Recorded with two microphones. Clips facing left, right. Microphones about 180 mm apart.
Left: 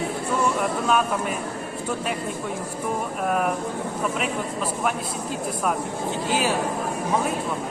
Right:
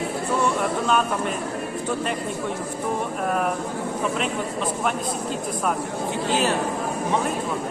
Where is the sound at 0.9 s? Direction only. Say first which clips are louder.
Left 1 dB; 5° left (ahead or behind).